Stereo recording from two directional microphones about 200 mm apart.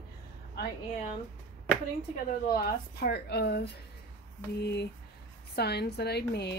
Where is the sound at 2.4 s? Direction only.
50° left (ahead or behind).